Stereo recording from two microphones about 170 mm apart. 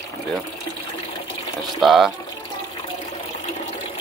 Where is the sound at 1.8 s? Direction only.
Centre (ahead or behind).